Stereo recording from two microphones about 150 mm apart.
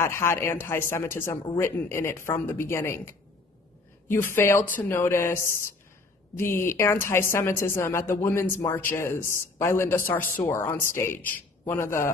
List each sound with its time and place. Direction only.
0.0 s a man's voice: 15° left (ahead or behind)
1.3 s speech: 35° left (ahead or behind)
1.6 s a man's voice: 15° left (ahead or behind)